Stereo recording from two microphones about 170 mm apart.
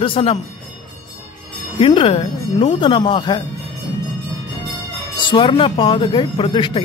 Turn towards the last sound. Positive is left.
turn(degrees=30)  # may be behind; listen again after turning